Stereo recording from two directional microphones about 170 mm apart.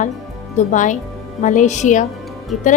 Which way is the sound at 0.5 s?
45° left (ahead or behind).